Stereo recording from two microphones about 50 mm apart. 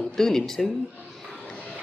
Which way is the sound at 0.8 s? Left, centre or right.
Left.